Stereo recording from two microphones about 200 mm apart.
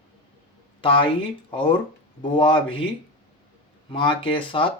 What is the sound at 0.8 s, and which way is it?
Speech, 25° left (ahead or behind).